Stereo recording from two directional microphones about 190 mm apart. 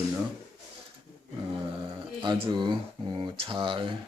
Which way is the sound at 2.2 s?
25° right (ahead or behind).